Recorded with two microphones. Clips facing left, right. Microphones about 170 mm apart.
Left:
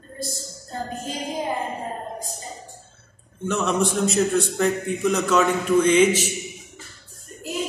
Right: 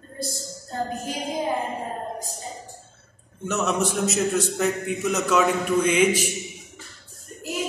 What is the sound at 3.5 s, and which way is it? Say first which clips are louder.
A man's voice: left 2 dB; 5° right (ahead or behind).